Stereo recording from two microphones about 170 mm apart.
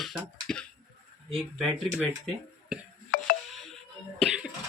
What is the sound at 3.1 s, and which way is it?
Music, 60° left (ahead or behind).